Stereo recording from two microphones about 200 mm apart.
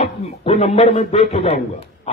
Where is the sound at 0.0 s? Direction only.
30° left (ahead or behind).